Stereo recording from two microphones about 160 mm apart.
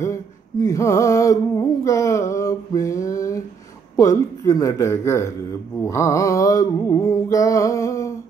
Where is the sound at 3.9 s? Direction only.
20° left (ahead or behind).